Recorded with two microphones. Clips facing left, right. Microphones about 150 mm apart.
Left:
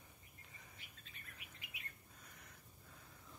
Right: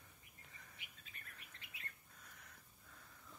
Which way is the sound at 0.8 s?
15° right (ahead or behind).